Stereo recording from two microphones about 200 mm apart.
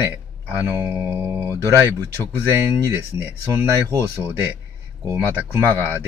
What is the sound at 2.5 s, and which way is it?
Speech, 10° right (ahead or behind).